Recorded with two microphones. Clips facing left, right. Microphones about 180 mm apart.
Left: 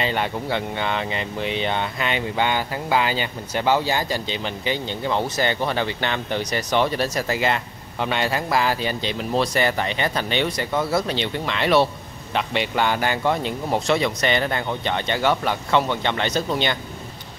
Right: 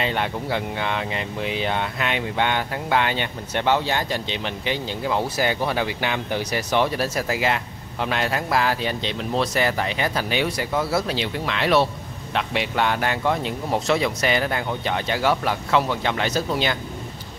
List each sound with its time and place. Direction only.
0.0 s speech: centre (ahead or behind)